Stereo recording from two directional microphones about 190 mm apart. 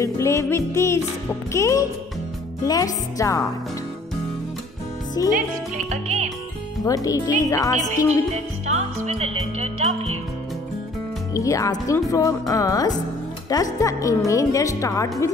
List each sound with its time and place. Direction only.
0.0 s speech: 15° left (ahead or behind)
5.2 s speech: 20° left (ahead or behind)
5.9 s music: 35° right (ahead or behind)
6.8 s speech: 20° left (ahead or behind)
8.6 s music: 35° right (ahead or behind)
11.3 s speech: 15° left (ahead or behind)